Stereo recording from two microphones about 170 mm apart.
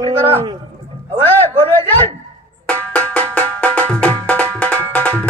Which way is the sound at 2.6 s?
10° left (ahead or behind).